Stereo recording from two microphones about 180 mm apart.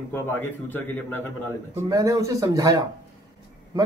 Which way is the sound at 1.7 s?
20° right (ahead or behind).